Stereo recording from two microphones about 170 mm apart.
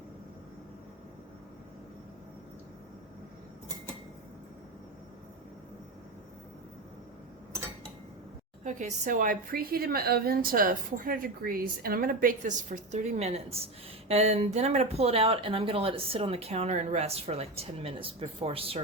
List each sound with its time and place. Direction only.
8.6 s a woman's voice: 50° right (ahead or behind)